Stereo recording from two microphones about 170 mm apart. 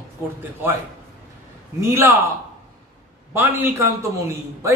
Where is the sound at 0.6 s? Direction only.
10° right (ahead or behind).